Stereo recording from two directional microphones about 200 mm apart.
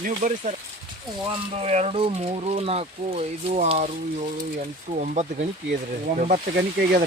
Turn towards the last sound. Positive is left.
turn(degrees=-50)  # may be behind; listen again after turning